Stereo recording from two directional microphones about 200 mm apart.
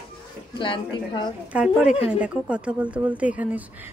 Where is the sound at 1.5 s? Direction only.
5° right (ahead or behind).